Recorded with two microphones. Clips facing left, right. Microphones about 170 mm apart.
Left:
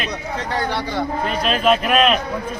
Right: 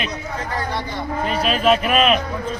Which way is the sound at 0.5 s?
75° left (ahead or behind).